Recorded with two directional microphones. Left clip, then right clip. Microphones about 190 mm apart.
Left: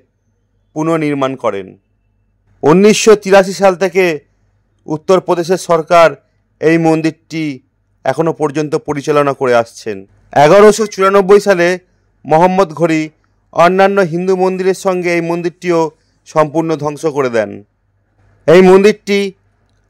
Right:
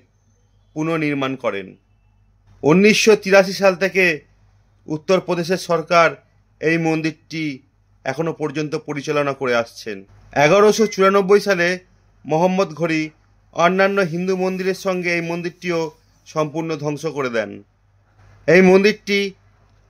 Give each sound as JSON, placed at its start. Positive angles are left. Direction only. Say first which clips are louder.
{"t": 0.7, "sound": "a man's voice", "louder": "left 7 dB", "side_deg": 40}